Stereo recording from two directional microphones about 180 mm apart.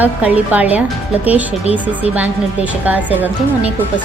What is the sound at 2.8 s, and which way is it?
Speech, 10° right (ahead or behind).